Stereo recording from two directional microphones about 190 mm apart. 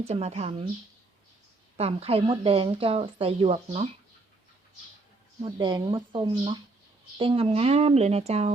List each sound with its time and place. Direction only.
0.0 s a woman's voice: 35° right (ahead or behind)
1.7 s speech: 30° right (ahead or behind)
5.4 s a woman's voice: 25° right (ahead or behind)